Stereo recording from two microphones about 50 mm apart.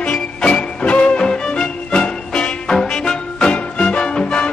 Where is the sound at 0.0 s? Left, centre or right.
Left.